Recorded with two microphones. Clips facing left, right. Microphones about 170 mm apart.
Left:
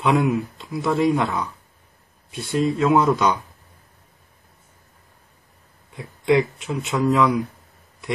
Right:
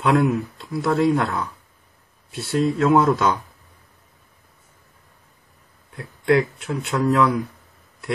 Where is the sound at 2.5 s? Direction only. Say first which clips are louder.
Right 1 dB; 5° left (ahead or behind).